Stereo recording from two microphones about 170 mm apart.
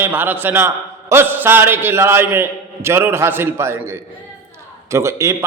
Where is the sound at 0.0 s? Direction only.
10° right (ahead or behind).